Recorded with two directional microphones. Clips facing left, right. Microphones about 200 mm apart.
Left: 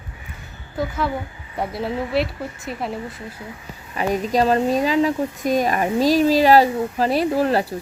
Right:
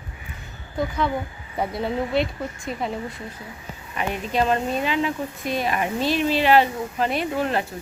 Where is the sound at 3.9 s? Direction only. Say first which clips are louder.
Left 5 dB; 35° left (ahead or behind).